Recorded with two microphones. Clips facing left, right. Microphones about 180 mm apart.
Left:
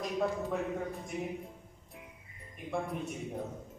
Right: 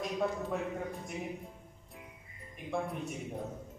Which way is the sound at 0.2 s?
Centre (ahead or behind).